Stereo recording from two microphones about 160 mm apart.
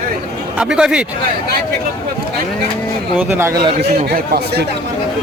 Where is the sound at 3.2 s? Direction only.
15° right (ahead or behind).